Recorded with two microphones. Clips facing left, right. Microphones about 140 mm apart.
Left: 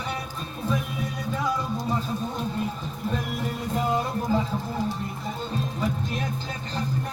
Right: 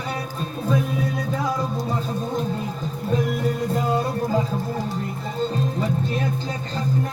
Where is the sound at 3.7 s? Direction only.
40° right (ahead or behind).